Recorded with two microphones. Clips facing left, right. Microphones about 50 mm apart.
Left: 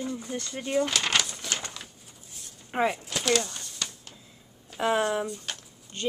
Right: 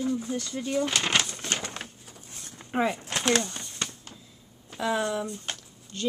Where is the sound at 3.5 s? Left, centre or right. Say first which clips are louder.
Right 2 dB; right.